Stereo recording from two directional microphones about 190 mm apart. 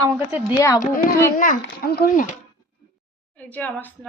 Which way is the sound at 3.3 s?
5° left (ahead or behind).